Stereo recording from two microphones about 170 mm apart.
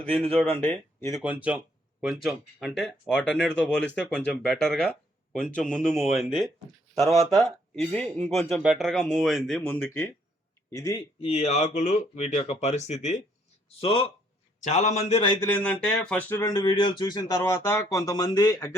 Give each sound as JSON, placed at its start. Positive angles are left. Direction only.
{"t": 0.0, "sound": "speech", "side_deg": 10}
{"t": 1.1, "sound": "speech", "side_deg": -10}
{"t": 7.8, "sound": "speech", "side_deg": 5}
{"t": 11.2, "sound": "speech", "side_deg": 35}
{"t": 13.8, "sound": "speech", "side_deg": 30}
{"t": 14.6, "sound": "speech", "side_deg": 45}
{"t": 15.4, "sound": "speech", "side_deg": 10}
{"t": 16.4, "sound": "speech", "side_deg": 25}